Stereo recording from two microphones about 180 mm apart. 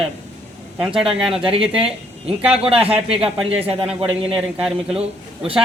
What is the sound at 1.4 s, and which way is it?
Speech, 30° right (ahead or behind).